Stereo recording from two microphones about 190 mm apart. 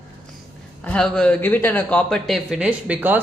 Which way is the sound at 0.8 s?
5° left (ahead or behind).